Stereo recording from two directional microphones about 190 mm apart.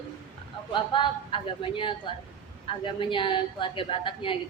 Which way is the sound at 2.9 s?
25° left (ahead or behind).